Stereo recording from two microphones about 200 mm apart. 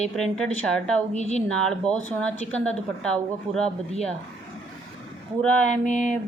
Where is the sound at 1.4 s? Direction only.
5° left (ahead or behind).